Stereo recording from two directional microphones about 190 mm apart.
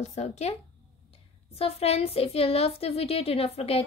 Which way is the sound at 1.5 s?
30° left (ahead or behind).